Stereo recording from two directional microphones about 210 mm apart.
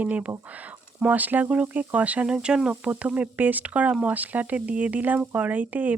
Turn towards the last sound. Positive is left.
turn(degrees=-5)  # may be behind; listen again after turning